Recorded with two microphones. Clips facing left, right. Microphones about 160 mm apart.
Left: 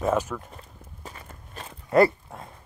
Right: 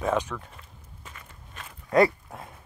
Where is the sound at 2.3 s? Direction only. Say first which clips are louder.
Even; 5° right (ahead or behind).